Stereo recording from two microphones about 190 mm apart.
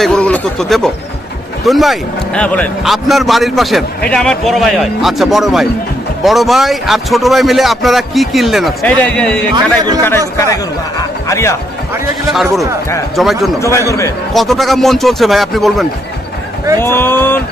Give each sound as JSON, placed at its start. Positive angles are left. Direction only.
{"t": 0.0, "sound": "a man's voice", "side_deg": 5}
{"t": 12.3, "sound": "a man's voice", "side_deg": 0}
{"t": 13.6, "sound": "speech", "side_deg": 15}
{"t": 14.3, "sound": "a man's voice", "side_deg": 0}
{"t": 16.8, "sound": "speech", "side_deg": 10}